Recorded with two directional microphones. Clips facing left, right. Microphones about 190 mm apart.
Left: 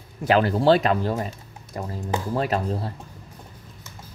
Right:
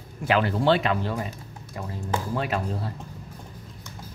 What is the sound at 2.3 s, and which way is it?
Speech, 40° left (ahead or behind).